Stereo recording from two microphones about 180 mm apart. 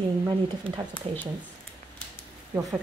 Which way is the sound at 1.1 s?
35° right (ahead or behind).